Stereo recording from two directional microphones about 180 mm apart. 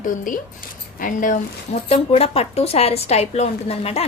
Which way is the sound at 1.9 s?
35° left (ahead or behind).